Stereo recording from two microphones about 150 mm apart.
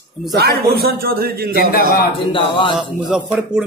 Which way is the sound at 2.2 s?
35° left (ahead or behind).